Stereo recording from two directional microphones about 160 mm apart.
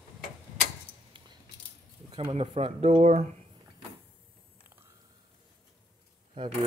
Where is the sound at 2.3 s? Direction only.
35° right (ahead or behind).